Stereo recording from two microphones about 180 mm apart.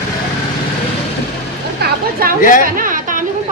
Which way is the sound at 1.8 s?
60° right (ahead or behind).